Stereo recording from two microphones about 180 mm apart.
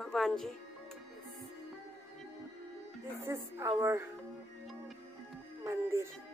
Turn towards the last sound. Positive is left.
turn(degrees=-15)  # may be behind; listen again after turning